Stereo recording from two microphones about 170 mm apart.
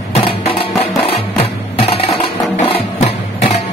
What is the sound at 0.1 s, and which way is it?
Music, 35° left (ahead or behind).